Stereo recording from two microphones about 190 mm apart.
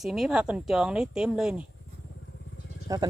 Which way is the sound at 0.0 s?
Centre (ahead or behind).